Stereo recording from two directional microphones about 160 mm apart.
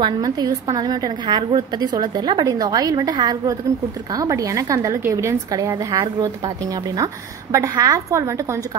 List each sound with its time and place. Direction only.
0.0 s a woman's voice: 25° right (ahead or behind)